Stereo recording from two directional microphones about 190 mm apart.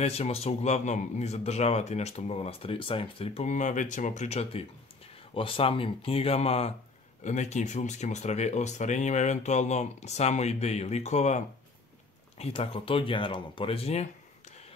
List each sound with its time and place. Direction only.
0.0 s speech: 35° left (ahead or behind)